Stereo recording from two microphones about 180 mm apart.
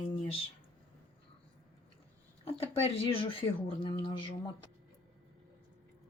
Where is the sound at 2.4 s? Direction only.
35° left (ahead or behind).